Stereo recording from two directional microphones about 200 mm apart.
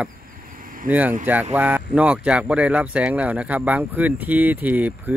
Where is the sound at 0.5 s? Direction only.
45° right (ahead or behind).